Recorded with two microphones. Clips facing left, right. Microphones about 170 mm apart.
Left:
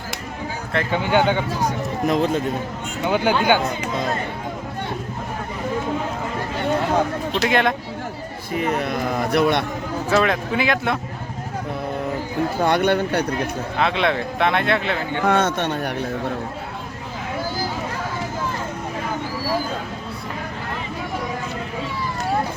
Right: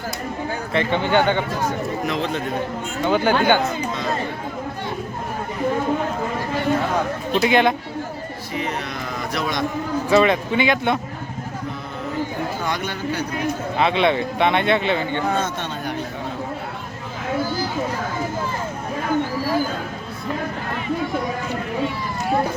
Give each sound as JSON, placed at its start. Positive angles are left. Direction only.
{"t": 0.7, "sound": "speech", "side_deg": 5}
{"t": 2.0, "sound": "a man's voice", "side_deg": 45}
{"t": 3.0, "sound": "speech", "side_deg": 10}
{"t": 7.4, "sound": "speech", "side_deg": 0}
{"t": 8.5, "sound": "a man's voice", "side_deg": 50}
{"t": 10.1, "sound": "speech", "side_deg": 0}
{"t": 12.6, "sound": "speech", "side_deg": 60}
{"t": 13.7, "sound": "speech", "side_deg": 0}
{"t": 15.3, "sound": "a man's voice", "side_deg": 70}